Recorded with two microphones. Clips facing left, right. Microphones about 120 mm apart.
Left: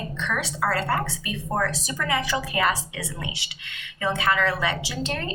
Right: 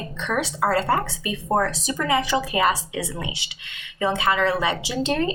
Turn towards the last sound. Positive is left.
turn(degrees=-20)  # may be behind; listen again after turning